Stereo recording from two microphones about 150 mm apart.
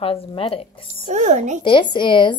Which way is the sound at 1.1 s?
50° right (ahead or behind).